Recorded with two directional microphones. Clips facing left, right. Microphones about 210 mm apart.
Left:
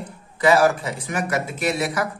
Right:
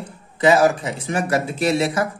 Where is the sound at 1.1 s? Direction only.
30° right (ahead or behind).